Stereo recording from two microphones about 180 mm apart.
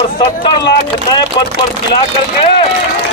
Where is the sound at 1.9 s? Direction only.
30° left (ahead or behind).